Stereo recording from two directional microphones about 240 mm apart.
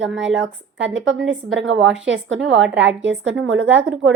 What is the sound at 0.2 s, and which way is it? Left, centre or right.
A woman's voice, right.